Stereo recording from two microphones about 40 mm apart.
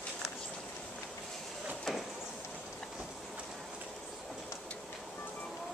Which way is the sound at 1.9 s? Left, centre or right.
Centre.